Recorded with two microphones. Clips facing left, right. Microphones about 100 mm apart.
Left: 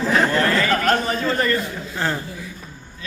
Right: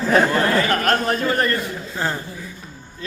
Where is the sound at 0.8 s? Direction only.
55° right (ahead or behind).